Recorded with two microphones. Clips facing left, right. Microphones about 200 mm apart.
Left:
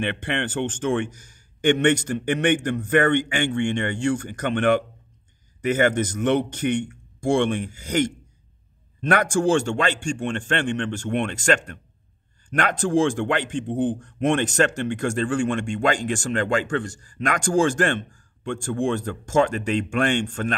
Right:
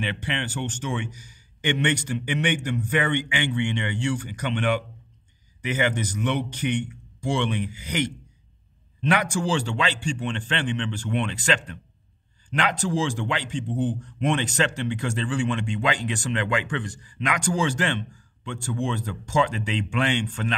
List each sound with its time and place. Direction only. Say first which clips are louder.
0.0 s speech: left 4 dB; 55° left (ahead or behind)